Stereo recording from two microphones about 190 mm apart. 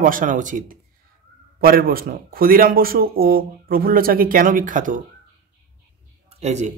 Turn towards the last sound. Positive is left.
turn(degrees=-35)  # may be behind; listen again after turning